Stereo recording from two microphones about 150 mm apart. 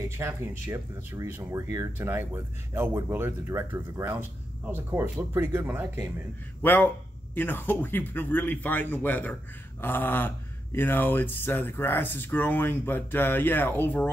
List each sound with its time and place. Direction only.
0.2 s speech: 15° right (ahead or behind)
6.6 s speech: 10° left (ahead or behind)